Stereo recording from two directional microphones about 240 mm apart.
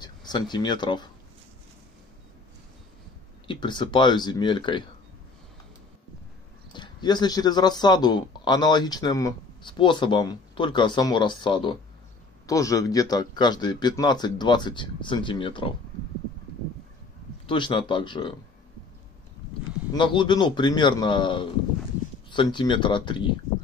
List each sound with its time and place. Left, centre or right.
0.0 s speech: centre
3.4 s a man's voice: centre
6.7 s speech: centre
17.5 s a man's voice: left
19.9 s a man's voice: centre